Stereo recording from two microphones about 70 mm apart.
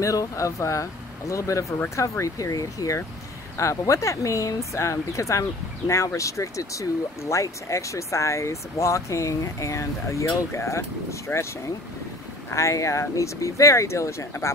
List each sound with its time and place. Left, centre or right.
0.0 s speech: left